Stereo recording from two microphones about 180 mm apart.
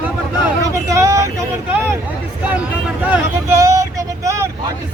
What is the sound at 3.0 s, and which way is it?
Vehicle, 15° right (ahead or behind).